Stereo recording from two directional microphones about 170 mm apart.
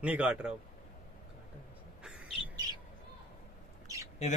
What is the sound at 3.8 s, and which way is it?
Mouse, 20° right (ahead or behind).